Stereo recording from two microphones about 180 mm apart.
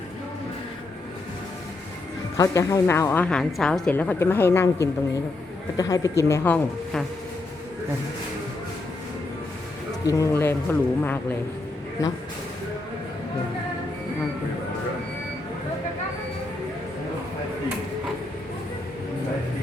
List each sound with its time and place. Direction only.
2.4 s a woman's voice: 20° left (ahead or behind)
10.1 s a woman's voice: 15° left (ahead or behind)